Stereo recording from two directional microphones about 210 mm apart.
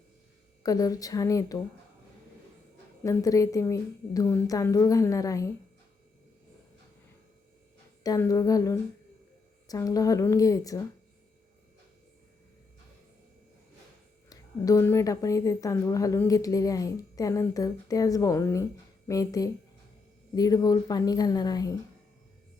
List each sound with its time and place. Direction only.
0.6 s a woman's voice: 15° left (ahead or behind)
3.0 s a woman's voice: 15° left (ahead or behind)
8.0 s a woman's voice: 15° left (ahead or behind)
14.3 s a woman's voice: 15° left (ahead or behind)